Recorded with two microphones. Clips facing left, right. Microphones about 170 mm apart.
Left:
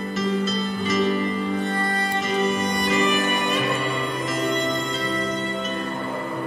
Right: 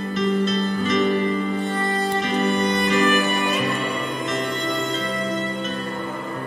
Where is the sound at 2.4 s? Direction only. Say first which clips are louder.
Right 2 dB; centre (ahead or behind).